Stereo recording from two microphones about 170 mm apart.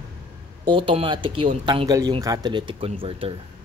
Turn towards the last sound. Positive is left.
turn(degrees=-35)  # may be behind; listen again after turning